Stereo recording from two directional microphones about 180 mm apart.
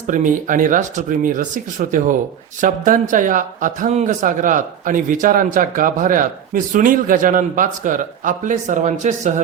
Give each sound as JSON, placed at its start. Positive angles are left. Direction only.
{"t": 0.1, "sound": "speech", "side_deg": -45}